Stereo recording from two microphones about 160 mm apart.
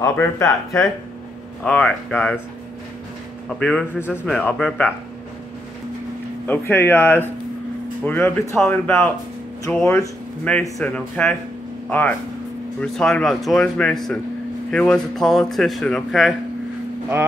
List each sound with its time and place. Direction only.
0.0 s speech: 20° left (ahead or behind)
1.6 s speech: 5° left (ahead or behind)
3.4 s speech: 5° left (ahead or behind)
6.4 s speech: 10° left (ahead or behind)